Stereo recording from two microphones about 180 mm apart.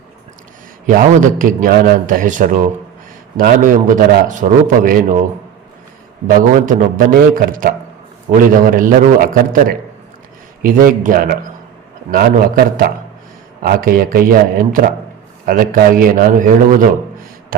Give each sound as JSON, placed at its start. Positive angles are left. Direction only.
{"t": 0.9, "sound": "a man's voice", "side_deg": -45}
{"t": 6.2, "sound": "a man's voice", "side_deg": -50}